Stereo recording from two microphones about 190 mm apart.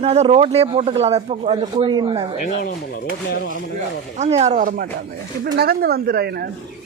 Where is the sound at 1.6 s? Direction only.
25° right (ahead or behind).